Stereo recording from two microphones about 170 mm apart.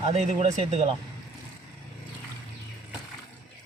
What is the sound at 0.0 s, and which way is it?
Speech, 40° right (ahead or behind).